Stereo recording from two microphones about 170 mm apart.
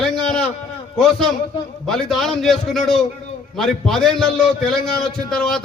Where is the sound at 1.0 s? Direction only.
5° left (ahead or behind).